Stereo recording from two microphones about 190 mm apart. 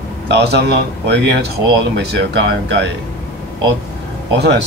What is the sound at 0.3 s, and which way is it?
Speech, 60° right (ahead or behind).